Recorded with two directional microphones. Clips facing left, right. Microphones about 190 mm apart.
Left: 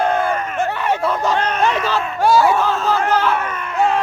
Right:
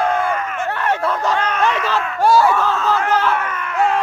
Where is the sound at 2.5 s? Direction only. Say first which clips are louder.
Left 1 dB; 30° left (ahead or behind).